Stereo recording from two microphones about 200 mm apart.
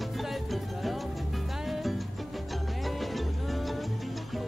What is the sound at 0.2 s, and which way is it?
Music, centre (ahead or behind).